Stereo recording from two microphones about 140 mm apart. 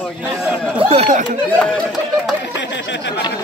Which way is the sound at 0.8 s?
45° right (ahead or behind).